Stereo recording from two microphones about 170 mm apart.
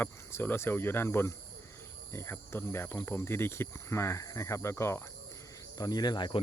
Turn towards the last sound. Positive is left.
turn(degrees=25)  # may be behind; listen again after turning